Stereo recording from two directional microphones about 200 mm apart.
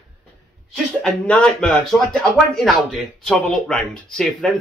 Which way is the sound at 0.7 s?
5° left (ahead or behind).